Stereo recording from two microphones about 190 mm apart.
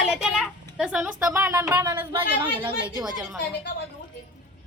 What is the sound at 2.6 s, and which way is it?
Speech, 25° right (ahead or behind).